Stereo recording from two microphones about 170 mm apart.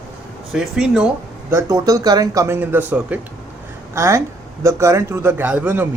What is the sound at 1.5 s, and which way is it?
A man's voice, 20° right (ahead or behind).